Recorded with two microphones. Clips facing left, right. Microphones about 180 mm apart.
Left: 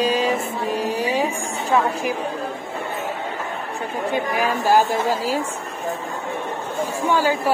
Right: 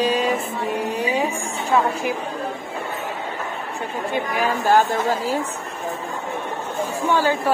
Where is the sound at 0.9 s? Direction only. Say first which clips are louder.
Left 1 dB; 10° left (ahead or behind).